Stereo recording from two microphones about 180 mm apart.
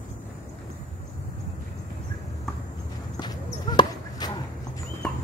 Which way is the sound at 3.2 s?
25° left (ahead or behind).